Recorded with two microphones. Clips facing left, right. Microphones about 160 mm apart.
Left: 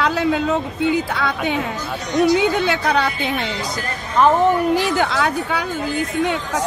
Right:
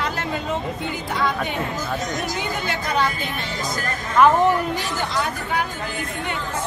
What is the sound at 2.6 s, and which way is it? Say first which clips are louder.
Speech: left 4 dB; 70° left (ahead or behind).